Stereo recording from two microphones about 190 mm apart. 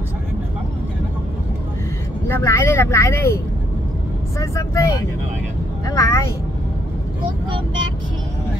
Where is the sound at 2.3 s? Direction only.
15° left (ahead or behind).